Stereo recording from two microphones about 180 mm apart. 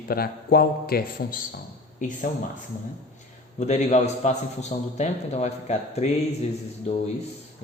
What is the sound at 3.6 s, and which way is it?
Speech, 40° left (ahead or behind).